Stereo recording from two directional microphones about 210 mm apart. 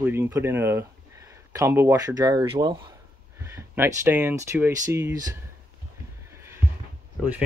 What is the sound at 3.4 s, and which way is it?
Speech, 10° right (ahead or behind).